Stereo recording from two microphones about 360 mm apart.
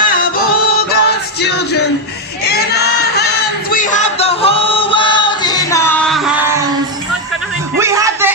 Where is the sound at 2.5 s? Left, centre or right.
Left.